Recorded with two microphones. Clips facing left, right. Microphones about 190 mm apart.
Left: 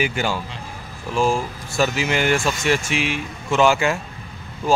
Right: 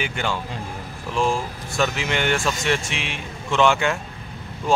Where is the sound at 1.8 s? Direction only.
5° left (ahead or behind).